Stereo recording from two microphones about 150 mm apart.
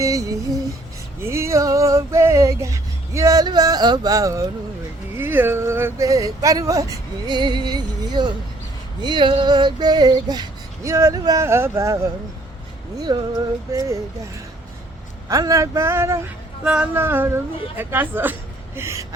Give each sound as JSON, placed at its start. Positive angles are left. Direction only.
{"t": 0.0, "sound": "music", "side_deg": -20}
{"t": 5.1, "sound": "speech", "side_deg": -15}
{"t": 15.3, "sound": "a woman's voice", "side_deg": -25}